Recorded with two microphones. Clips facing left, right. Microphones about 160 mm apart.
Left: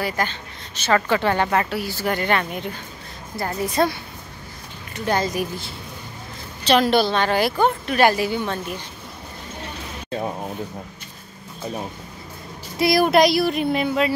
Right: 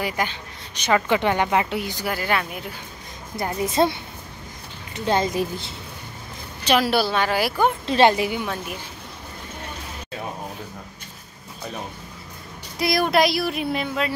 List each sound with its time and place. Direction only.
0.0 s a woman's voice: 10° right (ahead or behind)
2.0 s a sound: 5° right (ahead or behind)
3.3 s a woman's voice: 20° right (ahead or behind)
6.6 s a woman's voice: 10° right (ahead or behind)
7.8 s a woman's voice: 25° right (ahead or behind)
12.7 s a sound: centre (ahead or behind)